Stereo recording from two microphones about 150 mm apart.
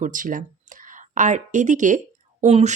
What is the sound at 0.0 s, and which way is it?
Speech, 60° right (ahead or behind).